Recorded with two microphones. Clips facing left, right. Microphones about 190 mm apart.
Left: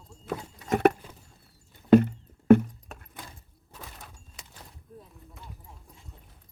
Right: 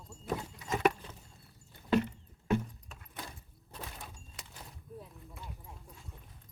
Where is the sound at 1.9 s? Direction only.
55° left (ahead or behind).